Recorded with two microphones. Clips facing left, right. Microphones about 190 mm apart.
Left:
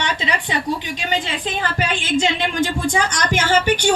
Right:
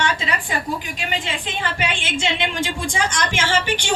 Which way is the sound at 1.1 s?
35° left (ahead or behind).